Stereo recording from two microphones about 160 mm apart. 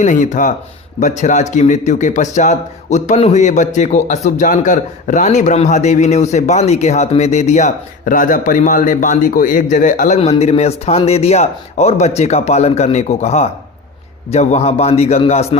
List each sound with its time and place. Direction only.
0.0 s a man's voice: 50° left (ahead or behind)
10.2 s speech: 40° left (ahead or behind)